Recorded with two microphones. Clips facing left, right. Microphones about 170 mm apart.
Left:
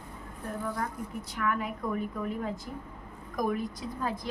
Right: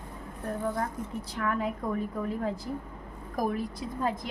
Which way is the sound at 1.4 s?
30° right (ahead or behind).